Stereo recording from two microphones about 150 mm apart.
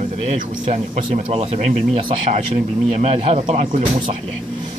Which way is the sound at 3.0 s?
50° right (ahead or behind).